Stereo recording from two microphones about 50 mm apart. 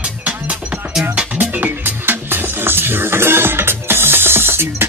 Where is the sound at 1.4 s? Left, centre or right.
Right.